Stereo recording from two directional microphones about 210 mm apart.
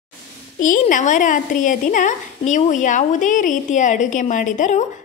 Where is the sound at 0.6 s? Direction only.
40° left (ahead or behind).